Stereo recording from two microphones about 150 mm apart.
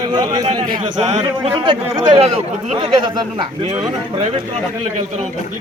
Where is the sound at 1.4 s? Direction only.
35° right (ahead or behind).